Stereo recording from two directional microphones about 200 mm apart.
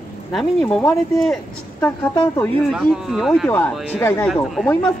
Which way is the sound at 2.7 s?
Centre (ahead or behind).